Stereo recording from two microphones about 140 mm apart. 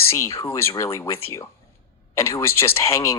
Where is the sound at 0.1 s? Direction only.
20° left (ahead or behind).